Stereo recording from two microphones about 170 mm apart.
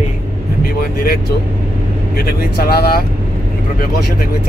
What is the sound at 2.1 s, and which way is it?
Speech, 65° left (ahead or behind).